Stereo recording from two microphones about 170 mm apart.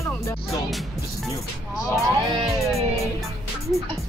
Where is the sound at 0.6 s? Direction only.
Centre (ahead or behind).